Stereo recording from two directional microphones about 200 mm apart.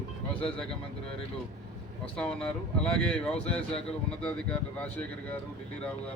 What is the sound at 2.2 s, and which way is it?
Speech, 5° left (ahead or behind).